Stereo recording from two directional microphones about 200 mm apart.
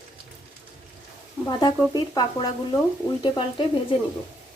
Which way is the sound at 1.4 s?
20° left (ahead or behind).